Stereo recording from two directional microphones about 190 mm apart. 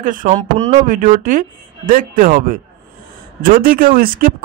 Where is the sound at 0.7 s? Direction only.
45° right (ahead or behind).